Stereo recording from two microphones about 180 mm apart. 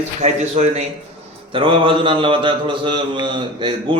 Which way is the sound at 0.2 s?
35° right (ahead or behind).